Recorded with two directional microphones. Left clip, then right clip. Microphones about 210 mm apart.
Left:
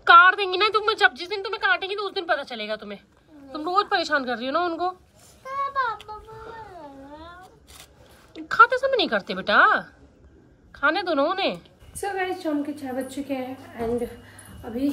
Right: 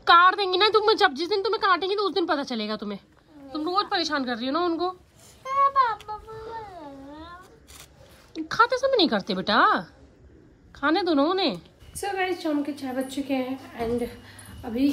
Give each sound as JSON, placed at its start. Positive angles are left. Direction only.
{"t": 0.0, "sound": "a woman's voice", "side_deg": -15}
{"t": 3.5, "sound": "a woman's voice", "side_deg": -15}
{"t": 7.2, "sound": "a sound", "side_deg": 0}
{"t": 8.5, "sound": "a woman's voice", "side_deg": -15}
{"t": 12.0, "sound": "a woman's voice", "side_deg": 0}